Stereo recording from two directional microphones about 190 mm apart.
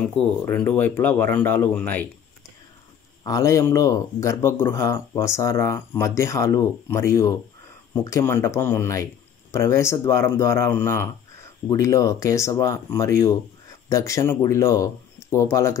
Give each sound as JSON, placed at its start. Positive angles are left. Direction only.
{"t": 0.0, "sound": "speech", "side_deg": 10}
{"t": 3.3, "sound": "speech", "side_deg": 15}